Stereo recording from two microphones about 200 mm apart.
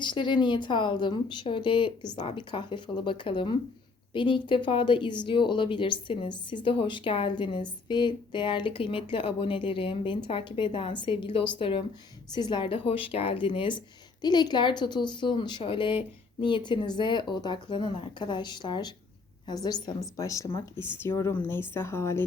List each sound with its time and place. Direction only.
0.0 s speech: 25° left (ahead or behind)